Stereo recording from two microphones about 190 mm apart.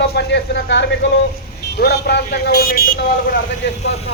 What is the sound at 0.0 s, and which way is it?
A man's voice, 60° left (ahead or behind).